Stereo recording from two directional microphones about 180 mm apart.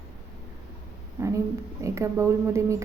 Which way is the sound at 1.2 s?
15° right (ahead or behind).